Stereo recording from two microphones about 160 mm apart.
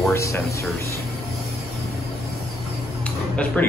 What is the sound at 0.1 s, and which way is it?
Speech, 20° left (ahead or behind).